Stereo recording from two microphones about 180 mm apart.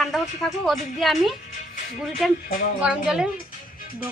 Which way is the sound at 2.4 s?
55° left (ahead or behind).